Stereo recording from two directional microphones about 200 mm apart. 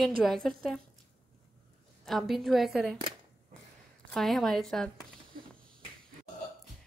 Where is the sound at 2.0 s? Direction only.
Centre (ahead or behind).